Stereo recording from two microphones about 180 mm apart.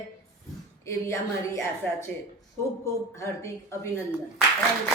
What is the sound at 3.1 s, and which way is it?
Speech, 15° left (ahead or behind).